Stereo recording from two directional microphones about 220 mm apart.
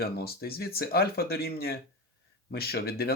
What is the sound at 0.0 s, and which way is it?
Speech, 45° left (ahead or behind).